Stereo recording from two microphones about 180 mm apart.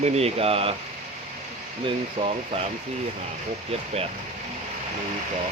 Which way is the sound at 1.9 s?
35° right (ahead or behind).